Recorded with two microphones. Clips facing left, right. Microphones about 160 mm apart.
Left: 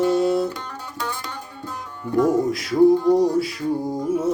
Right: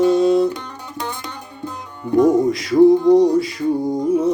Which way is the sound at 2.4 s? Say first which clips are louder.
Right 4 dB; centre (ahead or behind).